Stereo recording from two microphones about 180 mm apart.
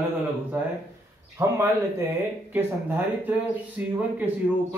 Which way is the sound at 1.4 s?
15° right (ahead or behind).